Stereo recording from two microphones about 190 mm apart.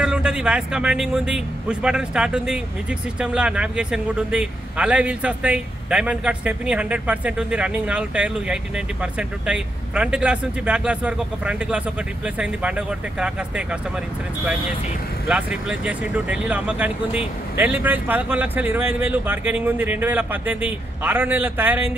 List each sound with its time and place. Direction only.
0.0 s a man's voice: 5° right (ahead or behind)
15.2 s a man's voice: 5° right (ahead or behind)